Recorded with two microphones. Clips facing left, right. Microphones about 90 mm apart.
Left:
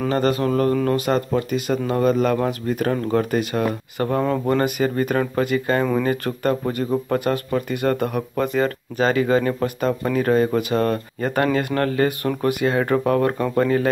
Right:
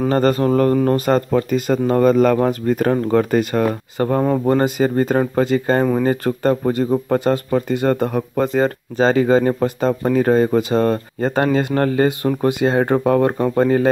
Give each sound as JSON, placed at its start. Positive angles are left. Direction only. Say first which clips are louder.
{"t": 0.1, "sound": "speech", "louder": "right 4 dB", "side_deg": -35}